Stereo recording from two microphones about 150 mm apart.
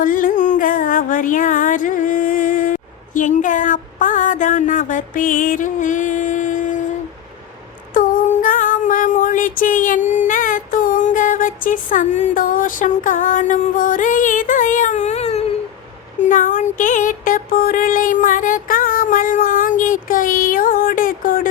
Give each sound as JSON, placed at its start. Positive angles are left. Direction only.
{"t": 0.0, "sound": "music", "side_deg": 65}
{"t": 7.9, "sound": "female singing", "side_deg": 60}
{"t": 16.2, "sound": "music", "side_deg": 60}